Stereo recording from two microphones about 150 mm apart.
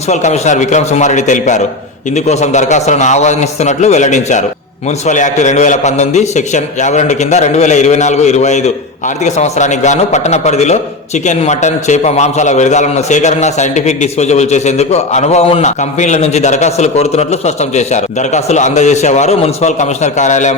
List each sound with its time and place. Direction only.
0.1 s a man's voice: 50° left (ahead or behind)